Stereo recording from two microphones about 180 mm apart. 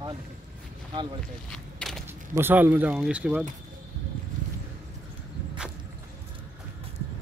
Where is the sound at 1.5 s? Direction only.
5° left (ahead or behind).